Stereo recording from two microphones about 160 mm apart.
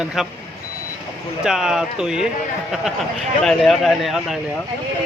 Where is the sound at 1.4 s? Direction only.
5° right (ahead or behind).